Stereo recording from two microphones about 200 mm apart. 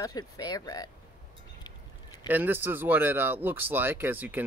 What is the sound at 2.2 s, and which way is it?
Speech, 10° right (ahead or behind).